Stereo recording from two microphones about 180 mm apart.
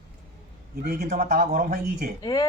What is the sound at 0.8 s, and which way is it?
Speech, 60° right (ahead or behind).